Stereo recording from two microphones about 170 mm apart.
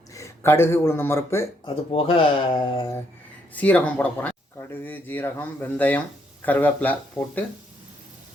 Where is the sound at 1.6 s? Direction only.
35° left (ahead or behind).